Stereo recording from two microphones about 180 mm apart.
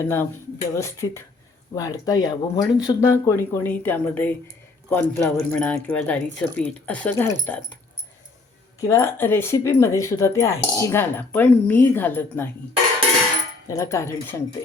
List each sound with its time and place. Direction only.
0.0 s speech: 10° left (ahead or behind)
8.8 s speech: 15° left (ahead or behind)
13.7 s speech: 15° left (ahead or behind)